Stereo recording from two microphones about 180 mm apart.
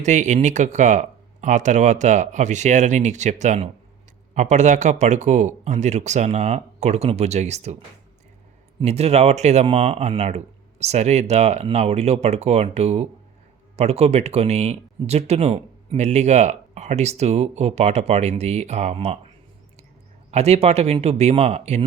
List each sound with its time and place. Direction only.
0.0 s speech: 40° right (ahead or behind)
8.8 s speech: 35° right (ahead or behind)
20.3 s speech: 35° right (ahead or behind)